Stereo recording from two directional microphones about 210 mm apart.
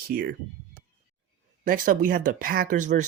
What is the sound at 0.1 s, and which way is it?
Speech, 50° right (ahead or behind).